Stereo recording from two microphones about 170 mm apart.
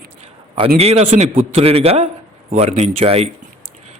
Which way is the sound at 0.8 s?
35° right (ahead or behind).